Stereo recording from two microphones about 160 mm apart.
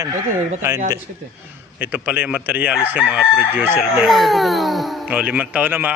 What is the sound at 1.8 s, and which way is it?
Speech, 10° right (ahead or behind).